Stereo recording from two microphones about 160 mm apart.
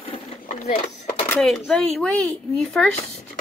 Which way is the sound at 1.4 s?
Centre (ahead or behind).